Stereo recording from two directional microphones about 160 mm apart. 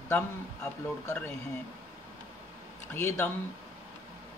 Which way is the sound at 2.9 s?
15° left (ahead or behind).